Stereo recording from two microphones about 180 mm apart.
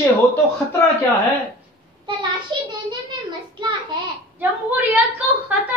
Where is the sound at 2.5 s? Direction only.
25° right (ahead or behind).